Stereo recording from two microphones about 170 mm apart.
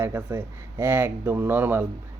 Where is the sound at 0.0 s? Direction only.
15° right (ahead or behind).